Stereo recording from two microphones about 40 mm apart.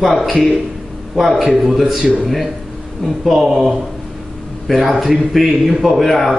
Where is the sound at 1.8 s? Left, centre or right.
Centre.